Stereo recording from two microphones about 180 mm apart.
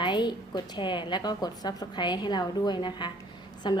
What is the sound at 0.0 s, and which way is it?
A woman's voice, 25° left (ahead or behind).